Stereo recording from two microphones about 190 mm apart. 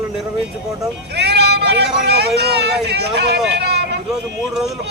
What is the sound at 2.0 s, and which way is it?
Speech, 60° right (ahead or behind).